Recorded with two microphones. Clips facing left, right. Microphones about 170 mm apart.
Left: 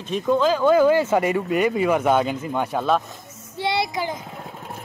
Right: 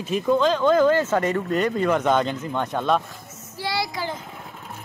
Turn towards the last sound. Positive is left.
turn(degrees=15)  # may be behind; listen again after turning